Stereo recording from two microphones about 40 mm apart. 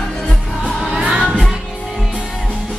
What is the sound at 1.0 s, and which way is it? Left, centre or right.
Music, right.